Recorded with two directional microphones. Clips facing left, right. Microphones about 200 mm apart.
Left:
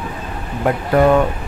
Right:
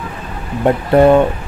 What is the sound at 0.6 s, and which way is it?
Speech, 25° right (ahead or behind).